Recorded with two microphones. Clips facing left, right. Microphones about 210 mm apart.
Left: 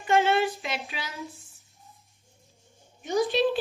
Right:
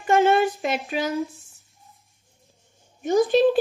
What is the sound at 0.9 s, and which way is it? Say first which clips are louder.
Speech: right 13 dB; 50° right (ahead or behind).